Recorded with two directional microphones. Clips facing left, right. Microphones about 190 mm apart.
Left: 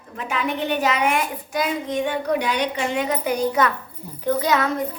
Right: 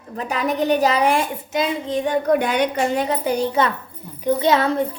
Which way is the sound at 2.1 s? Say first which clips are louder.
Right 7 dB; 50° right (ahead or behind).